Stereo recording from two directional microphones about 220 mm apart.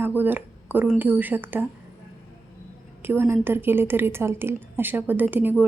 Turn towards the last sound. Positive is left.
turn(degrees=-10)  # may be behind; listen again after turning